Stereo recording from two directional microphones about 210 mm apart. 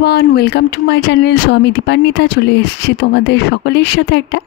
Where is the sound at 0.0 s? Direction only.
50° left (ahead or behind).